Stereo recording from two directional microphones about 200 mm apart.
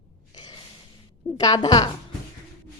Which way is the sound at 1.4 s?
20° left (ahead or behind).